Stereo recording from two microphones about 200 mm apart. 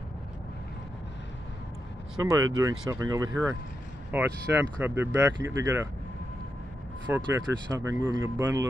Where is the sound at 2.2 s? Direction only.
15° right (ahead or behind).